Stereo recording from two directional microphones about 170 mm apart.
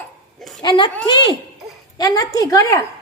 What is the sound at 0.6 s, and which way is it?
A woman's voice, 25° left (ahead or behind).